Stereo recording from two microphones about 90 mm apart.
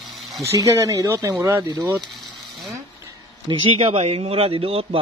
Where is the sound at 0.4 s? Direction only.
35° right (ahead or behind).